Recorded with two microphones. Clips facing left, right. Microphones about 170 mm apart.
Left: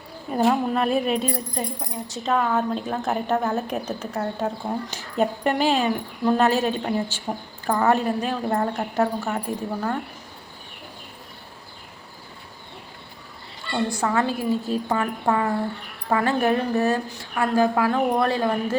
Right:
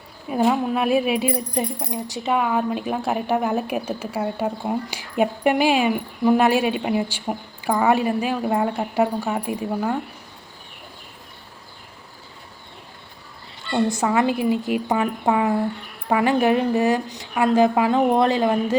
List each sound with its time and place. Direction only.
0.3 s speech: centre (ahead or behind)
13.8 s speech: 20° right (ahead or behind)